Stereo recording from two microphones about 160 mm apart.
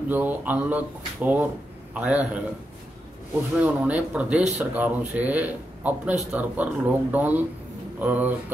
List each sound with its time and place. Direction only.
0.1 s speech: 10° right (ahead or behind)
3.5 s speech: 10° right (ahead or behind)